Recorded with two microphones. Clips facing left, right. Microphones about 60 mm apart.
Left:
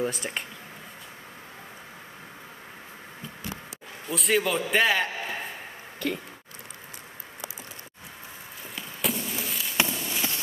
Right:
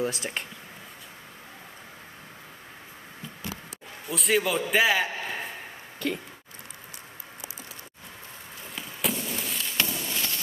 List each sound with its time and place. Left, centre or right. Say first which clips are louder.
0.0 s speech: even; centre
4.1 s a man's voice: even; centre
8.7 s fireworks: even; centre
10.0 s a sound: left 1 dB; centre